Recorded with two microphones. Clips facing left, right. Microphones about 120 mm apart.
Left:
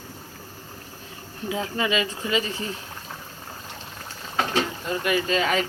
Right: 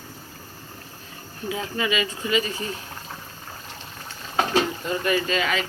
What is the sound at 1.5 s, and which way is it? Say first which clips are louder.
Speech: left 1 dB; 25° left (ahead or behind).